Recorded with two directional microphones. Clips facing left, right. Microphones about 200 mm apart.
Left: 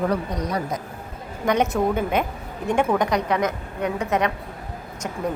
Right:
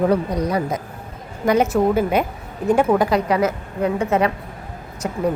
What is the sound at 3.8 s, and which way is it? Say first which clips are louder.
Speech: right 4 dB; 30° right (ahead or behind).